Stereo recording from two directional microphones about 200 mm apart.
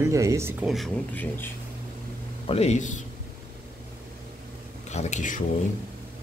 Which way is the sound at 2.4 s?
30° left (ahead or behind).